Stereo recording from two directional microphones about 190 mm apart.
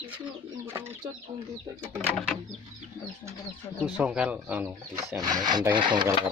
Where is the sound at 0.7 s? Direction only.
15° right (ahead or behind).